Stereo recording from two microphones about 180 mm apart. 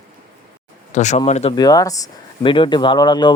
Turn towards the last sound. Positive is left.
turn(degrees=25)  # may be behind; listen again after turning